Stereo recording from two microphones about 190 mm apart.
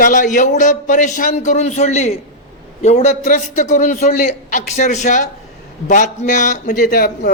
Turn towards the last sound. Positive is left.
turn(degrees=50)  # may be behind; listen again after turning